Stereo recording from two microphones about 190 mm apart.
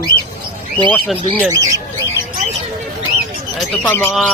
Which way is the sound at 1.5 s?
15° right (ahead or behind).